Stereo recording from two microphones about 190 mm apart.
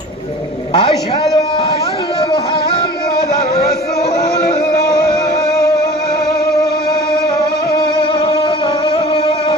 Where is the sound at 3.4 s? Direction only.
55° left (ahead or behind).